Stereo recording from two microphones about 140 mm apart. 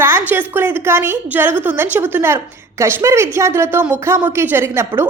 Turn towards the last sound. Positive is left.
turn(degrees=-20)  # may be behind; listen again after turning